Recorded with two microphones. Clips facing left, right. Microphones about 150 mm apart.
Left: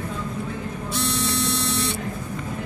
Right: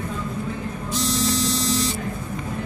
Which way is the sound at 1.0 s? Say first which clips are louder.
Right 3 dB; 65° left (ahead or behind).